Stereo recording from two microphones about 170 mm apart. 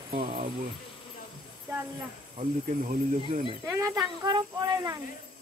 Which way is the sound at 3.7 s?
20° right (ahead or behind).